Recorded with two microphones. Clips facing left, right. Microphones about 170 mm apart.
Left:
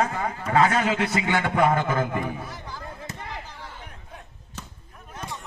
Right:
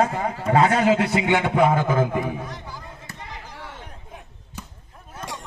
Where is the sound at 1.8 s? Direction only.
5° right (ahead or behind).